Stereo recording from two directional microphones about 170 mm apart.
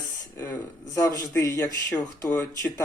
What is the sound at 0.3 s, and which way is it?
Speech, 15° left (ahead or behind).